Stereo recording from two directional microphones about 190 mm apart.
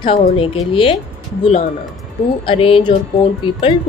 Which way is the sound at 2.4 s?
30° left (ahead or behind).